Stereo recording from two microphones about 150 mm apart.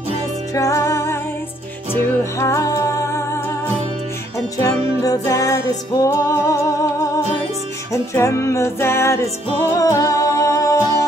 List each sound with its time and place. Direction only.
0.6 s music: 20° left (ahead or behind)
4.6 s music: 25° left (ahead or behind)
7.9 s music: 20° left (ahead or behind)